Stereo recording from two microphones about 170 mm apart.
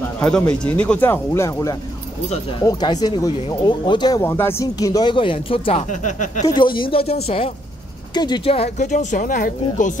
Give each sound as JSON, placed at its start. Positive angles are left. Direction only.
{"t": 0.2, "sound": "speech", "side_deg": 5}
{"t": 4.2, "sound": "speech", "side_deg": 15}
{"t": 6.4, "sound": "a woman's voice", "side_deg": 25}
{"t": 8.1, "sound": "speech", "side_deg": 25}